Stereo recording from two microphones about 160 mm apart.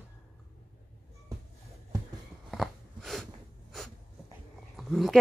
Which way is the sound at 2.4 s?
Centre (ahead or behind).